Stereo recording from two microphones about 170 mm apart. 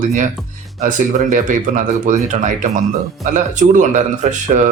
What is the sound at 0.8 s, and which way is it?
Speech, 45° right (ahead or behind).